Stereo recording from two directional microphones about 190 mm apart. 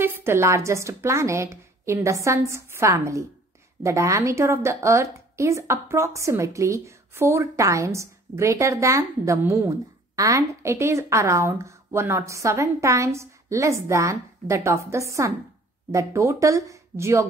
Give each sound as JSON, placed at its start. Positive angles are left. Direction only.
{"t": 0.0, "sound": "a woman's voice", "side_deg": -10}